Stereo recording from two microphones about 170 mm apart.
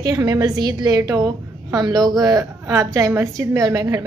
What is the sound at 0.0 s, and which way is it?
A woman's voice, 20° right (ahead or behind).